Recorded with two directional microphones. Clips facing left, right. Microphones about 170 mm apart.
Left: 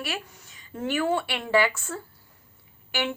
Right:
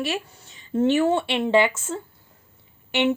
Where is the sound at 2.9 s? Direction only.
20° right (ahead or behind).